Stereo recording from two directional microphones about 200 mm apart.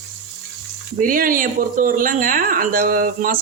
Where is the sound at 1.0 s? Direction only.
45° right (ahead or behind).